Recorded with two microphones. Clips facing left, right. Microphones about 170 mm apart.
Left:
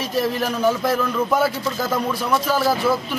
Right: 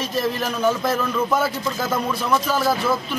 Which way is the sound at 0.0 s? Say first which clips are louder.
Left 2 dB; 10° left (ahead or behind).